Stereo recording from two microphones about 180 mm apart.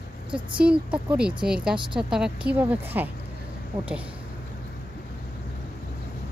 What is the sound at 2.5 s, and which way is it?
Speech, 10° right (ahead or behind).